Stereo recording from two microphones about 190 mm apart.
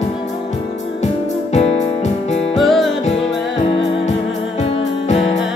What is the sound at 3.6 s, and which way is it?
Music, 30° left (ahead or behind).